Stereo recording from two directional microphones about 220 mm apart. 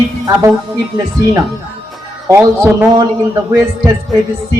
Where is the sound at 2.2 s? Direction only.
15° right (ahead or behind).